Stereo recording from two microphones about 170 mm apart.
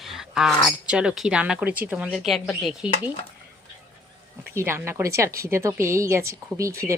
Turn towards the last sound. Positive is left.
turn(degrees=-20)  # may be behind; listen again after turning